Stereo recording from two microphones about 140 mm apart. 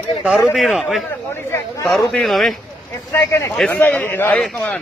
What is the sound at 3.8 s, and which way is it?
Speech, 15° left (ahead or behind).